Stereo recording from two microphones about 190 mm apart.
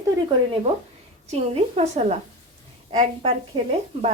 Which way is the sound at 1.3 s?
35° right (ahead or behind).